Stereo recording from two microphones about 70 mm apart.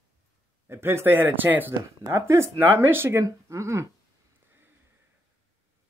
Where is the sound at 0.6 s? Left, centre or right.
Right.